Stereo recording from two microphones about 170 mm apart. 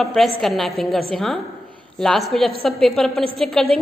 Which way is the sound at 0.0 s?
Centre (ahead or behind).